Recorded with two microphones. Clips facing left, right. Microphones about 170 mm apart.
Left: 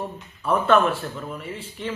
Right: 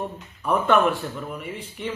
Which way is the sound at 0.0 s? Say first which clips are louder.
Even; 15° right (ahead or behind).